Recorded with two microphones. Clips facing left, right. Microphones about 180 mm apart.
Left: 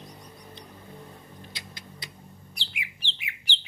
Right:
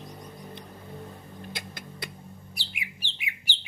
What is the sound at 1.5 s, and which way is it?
Rodents, 55° right (ahead or behind).